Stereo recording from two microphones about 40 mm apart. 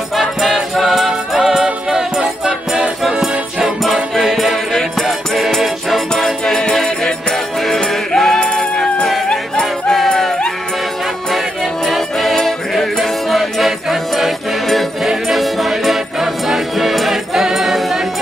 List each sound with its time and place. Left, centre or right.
0.1 s music: centre
3.0 s music: centre
9.3 s music: centre
11.2 s music: centre